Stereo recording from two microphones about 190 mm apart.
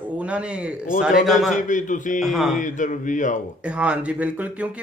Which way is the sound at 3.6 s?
5° right (ahead or behind).